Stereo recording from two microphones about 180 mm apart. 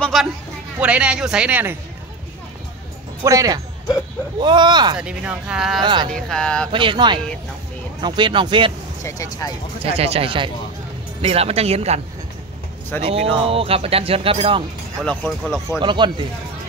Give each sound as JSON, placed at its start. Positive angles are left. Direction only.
{"t": 0.0, "sound": "speech", "side_deg": 0}
{"t": 3.3, "sound": "speech", "side_deg": -20}
{"t": 4.9, "sound": "speech", "side_deg": -5}
{"t": 5.8, "sound": "speech", "side_deg": -25}
{"t": 6.1, "sound": "speech", "side_deg": 5}
{"t": 6.7, "sound": "speech", "side_deg": -30}
{"t": 9.0, "sound": "speech", "side_deg": 15}
{"t": 9.8, "sound": "speech", "side_deg": -35}
{"t": 13.0, "sound": "speech", "side_deg": -35}
{"t": 15.0, "sound": "speech", "side_deg": 0}
{"t": 15.8, "sound": "speech", "side_deg": -25}